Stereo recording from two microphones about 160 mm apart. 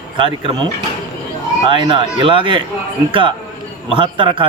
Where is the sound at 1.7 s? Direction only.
30° right (ahead or behind).